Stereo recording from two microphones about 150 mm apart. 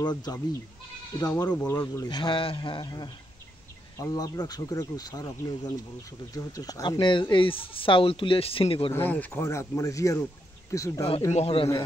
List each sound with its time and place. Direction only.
0.0 s speech: 30° left (ahead or behind)
8.9 s speech: 10° left (ahead or behind)
11.3 s a man's voice: 40° left (ahead or behind)